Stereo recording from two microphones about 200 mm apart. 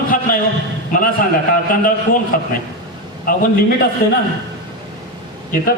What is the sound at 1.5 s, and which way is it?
Speech, 45° left (ahead or behind).